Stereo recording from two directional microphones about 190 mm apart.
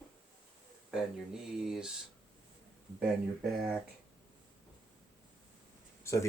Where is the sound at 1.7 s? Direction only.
5° right (ahead or behind).